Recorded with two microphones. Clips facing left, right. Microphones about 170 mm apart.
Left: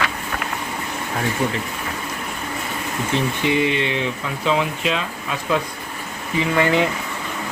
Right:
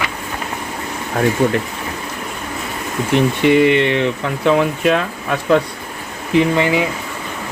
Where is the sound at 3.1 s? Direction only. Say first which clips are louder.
Right 8 dB; 60° right (ahead or behind).